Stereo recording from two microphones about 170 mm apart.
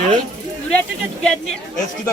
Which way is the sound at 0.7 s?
5° left (ahead or behind).